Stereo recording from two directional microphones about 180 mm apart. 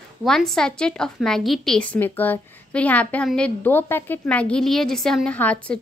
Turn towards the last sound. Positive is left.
turn(degrees=5)  # may be behind; listen again after turning